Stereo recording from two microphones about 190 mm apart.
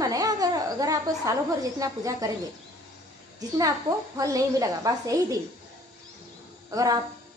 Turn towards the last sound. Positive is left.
turn(degrees=-20)  # may be behind; listen again after turning